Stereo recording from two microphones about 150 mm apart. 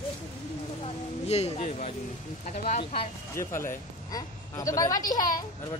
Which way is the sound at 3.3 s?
20° left (ahead or behind).